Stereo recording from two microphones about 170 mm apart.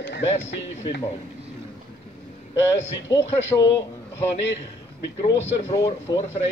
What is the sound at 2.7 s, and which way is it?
Speech, 20° left (ahead or behind).